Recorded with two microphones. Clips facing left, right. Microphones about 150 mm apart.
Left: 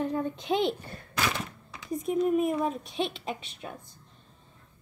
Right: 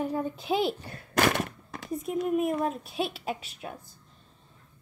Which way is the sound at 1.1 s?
55° right (ahead or behind).